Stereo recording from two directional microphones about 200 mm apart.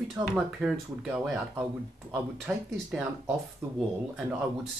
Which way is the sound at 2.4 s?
5° right (ahead or behind).